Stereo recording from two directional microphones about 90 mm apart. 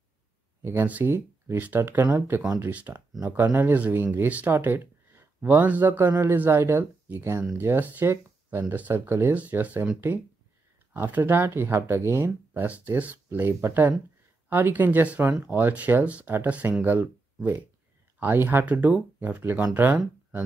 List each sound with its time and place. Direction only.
0.6 s speech: 25° right (ahead or behind)